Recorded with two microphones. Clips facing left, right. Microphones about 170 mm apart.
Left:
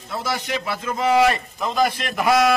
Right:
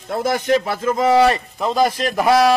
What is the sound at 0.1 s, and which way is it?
A man's voice, 50° right (ahead or behind).